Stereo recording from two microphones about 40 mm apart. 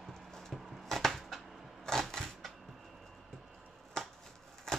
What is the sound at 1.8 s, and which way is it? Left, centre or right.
Typewriter, centre.